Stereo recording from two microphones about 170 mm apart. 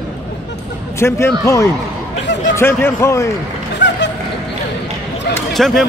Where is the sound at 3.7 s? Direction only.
90° left.